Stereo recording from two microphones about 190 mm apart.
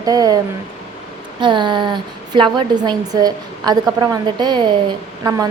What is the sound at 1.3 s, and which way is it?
A woman's voice, 25° right (ahead or behind).